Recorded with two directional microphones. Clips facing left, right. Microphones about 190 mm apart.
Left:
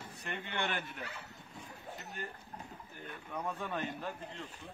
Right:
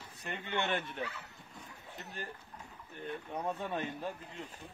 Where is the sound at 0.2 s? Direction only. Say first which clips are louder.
Right 2 dB; 20° right (ahead or behind).